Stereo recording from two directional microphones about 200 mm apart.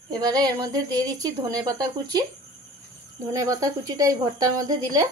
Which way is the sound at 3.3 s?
15° right (ahead or behind).